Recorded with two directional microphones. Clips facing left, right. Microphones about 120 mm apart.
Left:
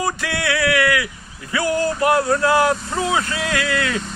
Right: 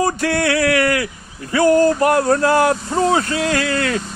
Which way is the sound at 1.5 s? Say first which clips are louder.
Right 7 dB; 45° right (ahead or behind).